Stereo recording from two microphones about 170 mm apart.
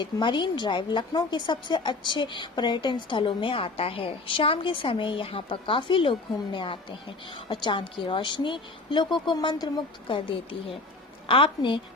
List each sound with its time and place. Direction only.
0.0 s a woman's voice: 30° left (ahead or behind)